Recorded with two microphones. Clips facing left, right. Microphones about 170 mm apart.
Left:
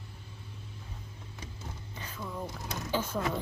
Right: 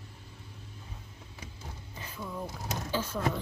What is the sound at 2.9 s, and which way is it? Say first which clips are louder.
Speech: left 1 dB; 10° left (ahead or behind).